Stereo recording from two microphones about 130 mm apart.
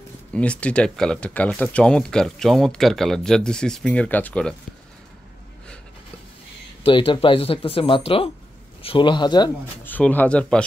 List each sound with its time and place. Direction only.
0.3 s speech: 10° left (ahead or behind)
6.8 s speech: 40° left (ahead or behind)
9.8 s speech: 15° left (ahead or behind)